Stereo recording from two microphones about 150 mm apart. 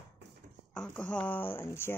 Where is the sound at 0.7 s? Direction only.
5° left (ahead or behind).